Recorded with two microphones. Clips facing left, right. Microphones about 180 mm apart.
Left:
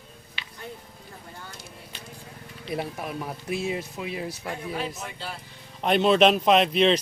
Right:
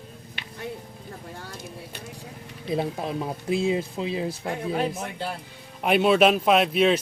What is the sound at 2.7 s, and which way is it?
Speech, 25° right (ahead or behind).